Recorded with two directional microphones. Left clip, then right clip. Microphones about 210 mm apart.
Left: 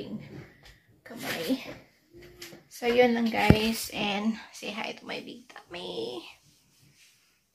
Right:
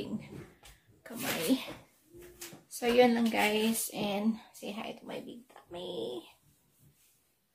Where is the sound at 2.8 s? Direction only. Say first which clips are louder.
Left 2 dB; 15° right (ahead or behind); by 6.1 s 10° left (ahead or behind).